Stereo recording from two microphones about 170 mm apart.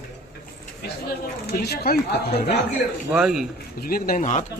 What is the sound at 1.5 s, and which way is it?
Speech, 65° left (ahead or behind).